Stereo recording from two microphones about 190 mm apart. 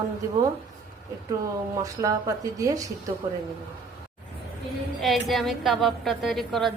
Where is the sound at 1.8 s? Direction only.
15° right (ahead or behind).